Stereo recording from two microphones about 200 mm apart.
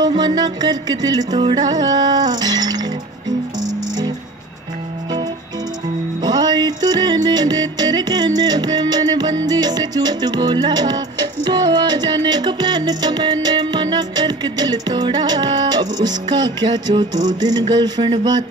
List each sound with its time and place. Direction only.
0.0 s music: 20° right (ahead or behind)
6.2 s music: 20° right (ahead or behind)